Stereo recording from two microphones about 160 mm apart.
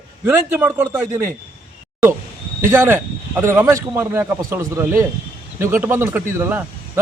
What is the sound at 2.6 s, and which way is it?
A man's voice, 15° right (ahead or behind).